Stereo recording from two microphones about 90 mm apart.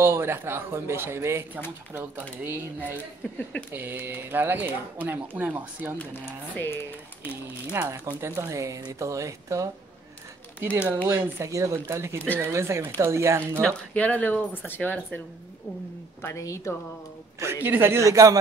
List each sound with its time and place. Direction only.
0.0 s speech: 25° right (ahead or behind)
2.4 s speech: 20° right (ahead or behind)
5.9 s speech: 25° left (ahead or behind)
7.8 s speech: 35° right (ahead or behind)
10.6 s speech: 25° right (ahead or behind)
13.6 s speech: 10° left (ahead or behind)
16.2 s speech: 30° left (ahead or behind)
17.4 s speech: 25° right (ahead or behind)